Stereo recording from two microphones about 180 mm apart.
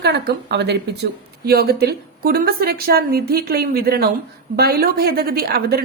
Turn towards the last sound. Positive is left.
turn(degrees=-60)  # may be behind; listen again after turning